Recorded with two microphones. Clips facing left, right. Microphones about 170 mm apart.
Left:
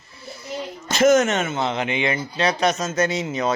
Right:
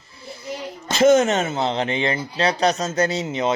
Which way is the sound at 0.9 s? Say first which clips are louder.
Right 1 dB; 30° right (ahead or behind).